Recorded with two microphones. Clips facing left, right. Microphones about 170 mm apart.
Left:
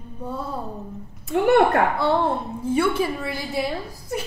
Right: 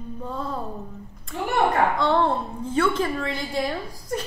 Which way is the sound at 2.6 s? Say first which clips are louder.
Left 2 dB; 10° left (ahead or behind).